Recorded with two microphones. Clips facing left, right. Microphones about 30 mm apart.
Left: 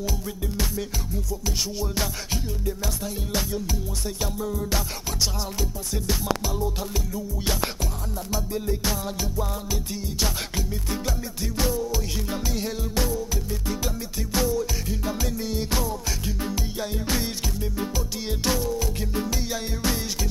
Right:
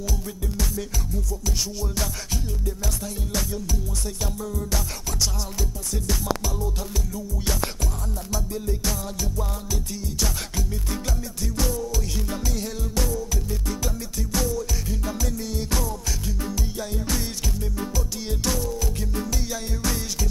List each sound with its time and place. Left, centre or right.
4.2 s music: centre
11.5 s music: left
14.3 s music: left